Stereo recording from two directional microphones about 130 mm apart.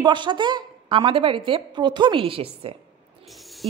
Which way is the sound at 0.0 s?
35° right (ahead or behind).